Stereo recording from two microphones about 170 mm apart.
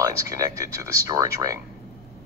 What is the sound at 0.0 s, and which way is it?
Speech, 20° right (ahead or behind).